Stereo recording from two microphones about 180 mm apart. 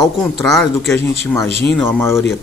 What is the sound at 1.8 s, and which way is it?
Speech, 15° left (ahead or behind).